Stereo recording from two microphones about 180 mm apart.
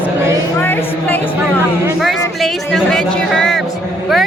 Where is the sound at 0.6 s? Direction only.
10° left (ahead or behind).